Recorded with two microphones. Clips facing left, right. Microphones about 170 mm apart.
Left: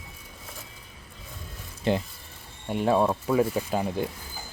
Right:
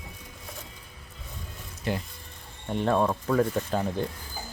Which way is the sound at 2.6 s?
10° left (ahead or behind).